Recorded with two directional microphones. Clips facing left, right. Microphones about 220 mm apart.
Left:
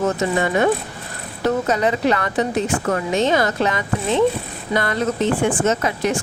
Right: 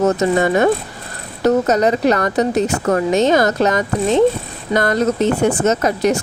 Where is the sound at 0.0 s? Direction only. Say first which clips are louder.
Right 5 dB; 40° right (ahead or behind).